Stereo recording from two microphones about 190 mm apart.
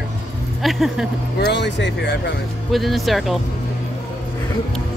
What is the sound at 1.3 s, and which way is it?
Speech, 65° left (ahead or behind).